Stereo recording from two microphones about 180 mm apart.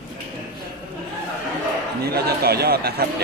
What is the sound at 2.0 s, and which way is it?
Chatter, 60° right (ahead or behind).